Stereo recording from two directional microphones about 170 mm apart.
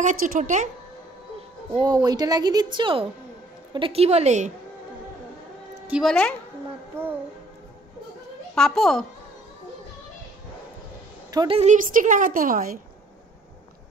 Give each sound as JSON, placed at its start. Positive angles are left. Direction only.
{"t": 0.0, "sound": "a woman's voice", "side_deg": -50}
{"t": 1.8, "sound": "a woman's voice", "side_deg": -20}
{"t": 5.9, "sound": "a woman's voice", "side_deg": -5}
{"t": 8.5, "sound": "a child's voice", "side_deg": 5}
{"t": 11.3, "sound": "a woman's voice", "side_deg": -30}
{"t": 11.6, "sound": "a woman's voice", "side_deg": -45}